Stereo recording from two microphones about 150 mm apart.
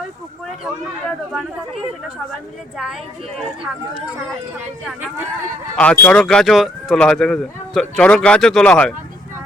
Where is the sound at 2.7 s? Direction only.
5° right (ahead or behind).